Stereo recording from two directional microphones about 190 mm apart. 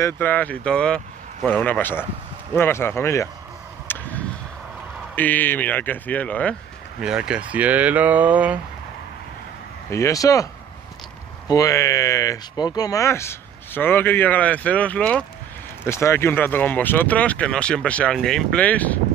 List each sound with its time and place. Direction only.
0.0 s speech: 10° left (ahead or behind)
3.8 s a sound: 10° left (ahead or behind)
5.1 s speech: 10° left (ahead or behind)
7.0 s speech: 5° right (ahead or behind)
9.8 s speech: 15° left (ahead or behind)